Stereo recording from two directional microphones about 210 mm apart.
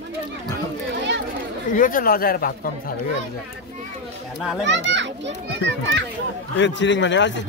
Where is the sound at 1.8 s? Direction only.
40° left (ahead or behind).